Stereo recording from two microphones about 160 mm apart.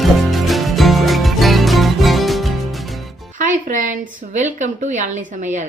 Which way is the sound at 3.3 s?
55° right (ahead or behind).